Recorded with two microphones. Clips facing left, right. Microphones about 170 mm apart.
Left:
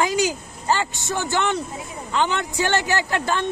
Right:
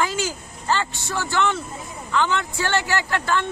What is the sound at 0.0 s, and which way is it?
Speech, 15° left (ahead or behind).